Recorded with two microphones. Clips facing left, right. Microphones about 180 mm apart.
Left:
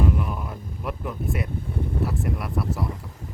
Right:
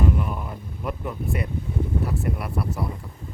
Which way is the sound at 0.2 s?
Centre (ahead or behind).